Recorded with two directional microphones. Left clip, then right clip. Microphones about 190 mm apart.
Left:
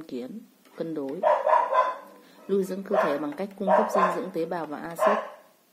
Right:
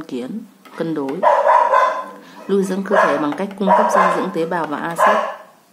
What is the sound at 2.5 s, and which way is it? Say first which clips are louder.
Speech: right 9 dB; 15° left (ahead or behind).